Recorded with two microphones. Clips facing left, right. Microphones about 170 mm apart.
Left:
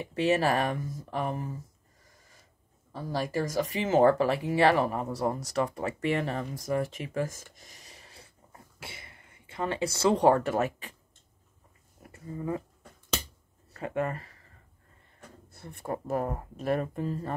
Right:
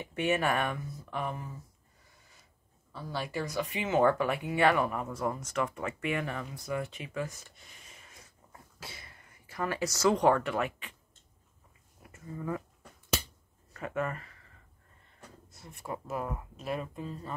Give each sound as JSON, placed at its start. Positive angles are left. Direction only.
{"t": 0.0, "sound": "speech", "side_deg": 35}
{"t": 2.9, "sound": "speech", "side_deg": 40}
{"t": 12.0, "sound": "a sound", "side_deg": 30}
{"t": 13.7, "sound": "speech", "side_deg": 30}
{"t": 15.5, "sound": "speech", "side_deg": 55}
{"t": 16.5, "sound": "speech", "side_deg": 55}